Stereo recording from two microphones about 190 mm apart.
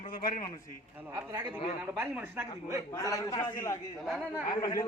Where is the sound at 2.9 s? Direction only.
15° left (ahead or behind).